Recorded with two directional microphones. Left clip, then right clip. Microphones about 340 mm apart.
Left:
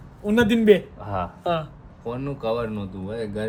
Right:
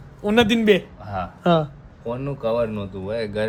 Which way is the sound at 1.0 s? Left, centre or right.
Centre.